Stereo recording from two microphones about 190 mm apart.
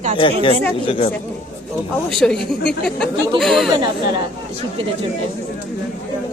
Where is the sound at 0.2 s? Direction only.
25° left (ahead or behind).